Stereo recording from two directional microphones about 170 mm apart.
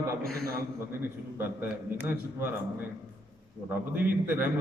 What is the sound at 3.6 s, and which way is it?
Speech, 10° right (ahead or behind).